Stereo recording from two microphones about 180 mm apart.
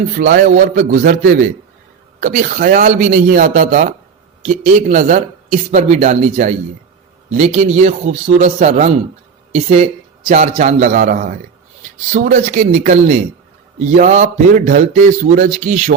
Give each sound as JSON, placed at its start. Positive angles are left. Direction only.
{"t": 0.2, "sound": "a man's voice", "side_deg": -50}